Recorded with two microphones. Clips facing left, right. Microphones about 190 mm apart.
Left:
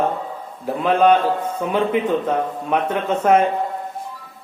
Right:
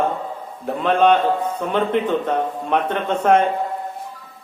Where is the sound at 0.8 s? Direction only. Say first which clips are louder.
Even; 5° left (ahead or behind).